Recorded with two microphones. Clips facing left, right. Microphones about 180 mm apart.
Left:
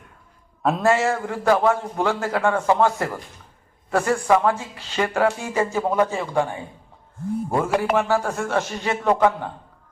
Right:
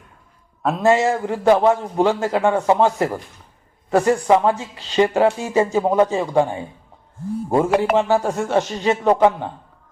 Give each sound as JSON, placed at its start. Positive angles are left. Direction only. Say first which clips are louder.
{"t": 0.8, "sound": "speech", "louder": "right 5 dB", "side_deg": -20}